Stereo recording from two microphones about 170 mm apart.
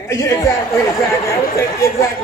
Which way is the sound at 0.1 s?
20° left (ahead or behind).